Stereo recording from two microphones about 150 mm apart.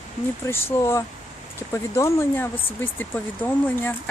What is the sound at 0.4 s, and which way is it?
Speech, 15° left (ahead or behind).